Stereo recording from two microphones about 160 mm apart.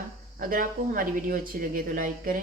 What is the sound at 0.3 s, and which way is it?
Speech, 60° right (ahead or behind).